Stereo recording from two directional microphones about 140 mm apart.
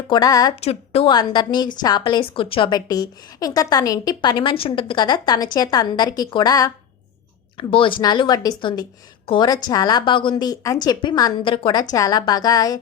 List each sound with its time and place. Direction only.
0.1 s a woman's voice: 25° left (ahead or behind)
0.6 s a woman's voice: 45° left (ahead or behind)
1.1 s a woman's voice: 30° left (ahead or behind)
7.5 s a woman's voice: 40° left (ahead or behind)